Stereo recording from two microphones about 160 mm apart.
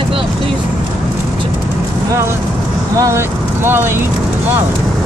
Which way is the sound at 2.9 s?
20° right (ahead or behind).